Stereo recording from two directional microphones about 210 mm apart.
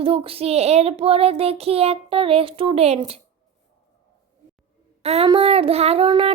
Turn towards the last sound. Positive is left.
turn(degrees=-25)  # may be behind; listen again after turning